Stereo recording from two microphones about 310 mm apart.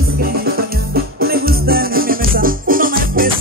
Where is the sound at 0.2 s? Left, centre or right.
Right.